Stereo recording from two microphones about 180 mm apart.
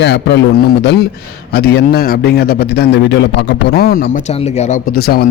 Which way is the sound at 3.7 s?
60° left (ahead or behind).